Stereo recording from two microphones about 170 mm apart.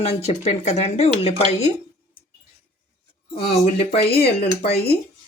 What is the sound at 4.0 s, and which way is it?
Speech, 70° left (ahead or behind).